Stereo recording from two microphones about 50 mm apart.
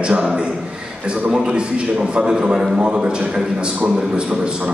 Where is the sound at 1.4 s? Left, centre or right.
Centre.